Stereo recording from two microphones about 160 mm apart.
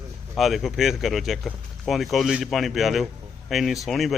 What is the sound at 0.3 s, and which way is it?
Speech, centre (ahead or behind).